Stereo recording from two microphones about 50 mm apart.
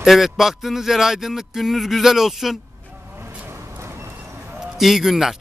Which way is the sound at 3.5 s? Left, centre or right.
Right.